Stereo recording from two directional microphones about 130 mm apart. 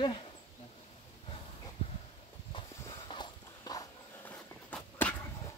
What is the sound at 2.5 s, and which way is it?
Clip-clop, 45° left (ahead or behind).